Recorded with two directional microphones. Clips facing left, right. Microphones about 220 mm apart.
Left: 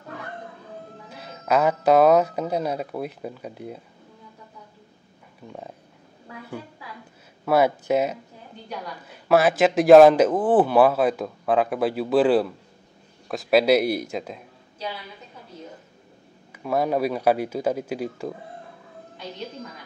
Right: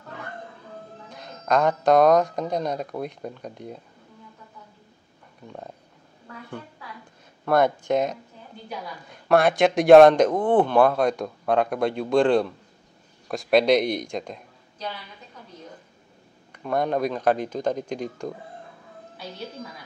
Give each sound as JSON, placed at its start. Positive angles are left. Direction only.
{"t": 1.0, "sound": "speech", "side_deg": 5}
{"t": 7.4, "sound": "speech", "side_deg": 5}
{"t": 16.5, "sound": "speech", "side_deg": 5}